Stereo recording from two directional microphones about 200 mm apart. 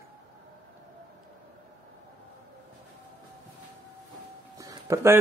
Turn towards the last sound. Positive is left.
turn(degrees=-15)  # may be behind; listen again after turning